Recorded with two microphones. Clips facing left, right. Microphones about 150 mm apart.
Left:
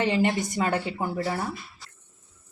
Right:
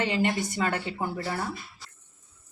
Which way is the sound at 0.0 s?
25° left (ahead or behind).